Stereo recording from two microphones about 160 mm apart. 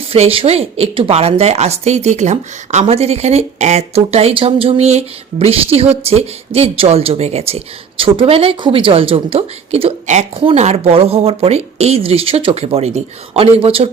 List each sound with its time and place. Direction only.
0.0 s speech: 35° right (ahead or behind)